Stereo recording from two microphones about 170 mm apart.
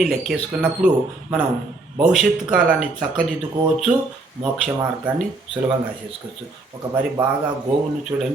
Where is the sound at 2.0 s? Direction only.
Centre (ahead or behind).